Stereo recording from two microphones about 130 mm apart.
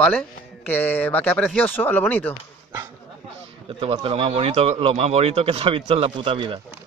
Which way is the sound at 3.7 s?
45° right (ahead or behind).